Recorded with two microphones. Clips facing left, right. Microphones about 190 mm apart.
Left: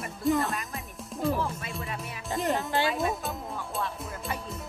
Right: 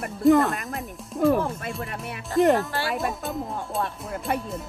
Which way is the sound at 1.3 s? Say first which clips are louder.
Right 6 dB; 55° right (ahead or behind).